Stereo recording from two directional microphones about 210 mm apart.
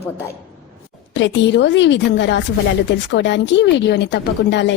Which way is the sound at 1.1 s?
60° left (ahead or behind).